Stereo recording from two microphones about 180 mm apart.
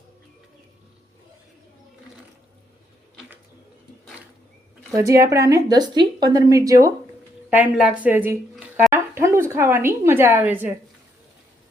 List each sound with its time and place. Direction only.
4.9 s a woman's voice: 15° right (ahead or behind)
7.5 s a woman's voice: 5° right (ahead or behind)